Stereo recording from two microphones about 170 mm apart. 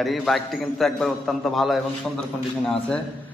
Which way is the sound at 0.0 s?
Centre (ahead or behind).